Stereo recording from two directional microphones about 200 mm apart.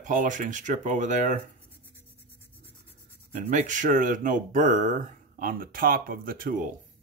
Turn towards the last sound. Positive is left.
turn(degrees=-45)  # may be behind; listen again after turning